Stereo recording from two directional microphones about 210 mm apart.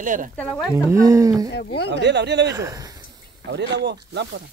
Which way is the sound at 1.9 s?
55° right (ahead or behind).